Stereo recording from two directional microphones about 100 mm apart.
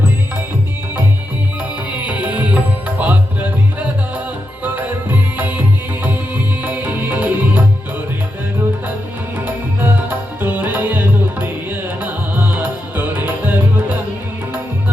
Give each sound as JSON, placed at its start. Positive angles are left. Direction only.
{"t": 2.0, "sound": "music", "side_deg": -15}
{"t": 9.4, "sound": "music", "side_deg": -20}